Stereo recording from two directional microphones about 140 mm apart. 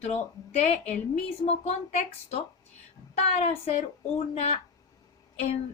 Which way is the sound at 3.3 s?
45° left (ahead or behind).